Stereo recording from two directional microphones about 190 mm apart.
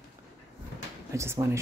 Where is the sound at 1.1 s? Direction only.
15° right (ahead or behind).